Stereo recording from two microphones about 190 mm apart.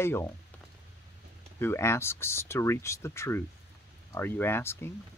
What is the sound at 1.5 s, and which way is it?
Speech, 15° left (ahead or behind).